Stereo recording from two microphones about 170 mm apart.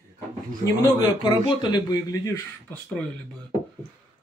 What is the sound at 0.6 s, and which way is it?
A man's voice, 25° left (ahead or behind).